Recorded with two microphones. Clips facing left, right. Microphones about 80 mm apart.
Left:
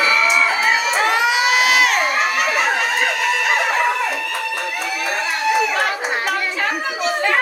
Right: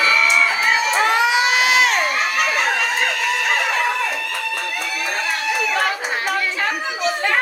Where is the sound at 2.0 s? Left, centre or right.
Centre.